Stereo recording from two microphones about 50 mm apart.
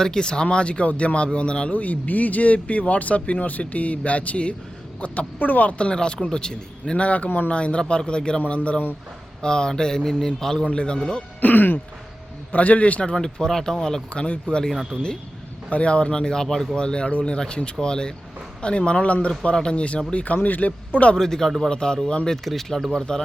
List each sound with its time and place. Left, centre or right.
0.0 s speech: centre
1.7 s speech: left
7.3 s a man's voice: left
7.5 s speech: left
11.3 s speech: left
13.1 s speech: centre
14.1 s speech: left
15.7 s speech: left; by 16.7 s centre
16.7 s speech: centre
20.2 s a man's voice: left
21.2 s speech: centre
22.4 s speech: centre